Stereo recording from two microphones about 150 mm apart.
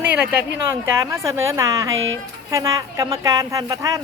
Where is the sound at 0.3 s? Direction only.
15° right (ahead or behind).